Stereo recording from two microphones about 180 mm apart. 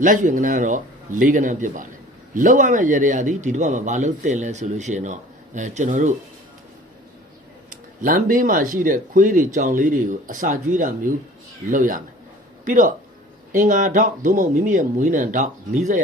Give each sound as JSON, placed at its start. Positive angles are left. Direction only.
{"t": 0.0, "sound": "speech", "side_deg": -45}
{"t": 7.7, "sound": "speech", "side_deg": -50}